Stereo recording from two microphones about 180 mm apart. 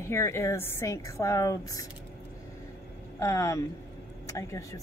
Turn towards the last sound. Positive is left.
turn(degrees=20)  # may be behind; listen again after turning